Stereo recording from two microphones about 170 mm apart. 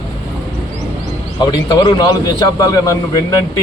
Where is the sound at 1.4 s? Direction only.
25° left (ahead or behind).